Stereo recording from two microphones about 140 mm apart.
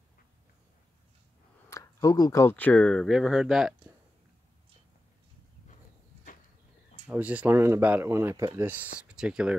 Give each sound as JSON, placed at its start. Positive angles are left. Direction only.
{"t": 1.7, "sound": "speech", "side_deg": 25}
{"t": 7.1, "sound": "speech", "side_deg": -10}